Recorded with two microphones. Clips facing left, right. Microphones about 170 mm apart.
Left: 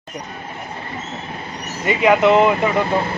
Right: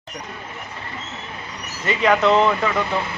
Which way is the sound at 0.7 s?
40° left (ahead or behind).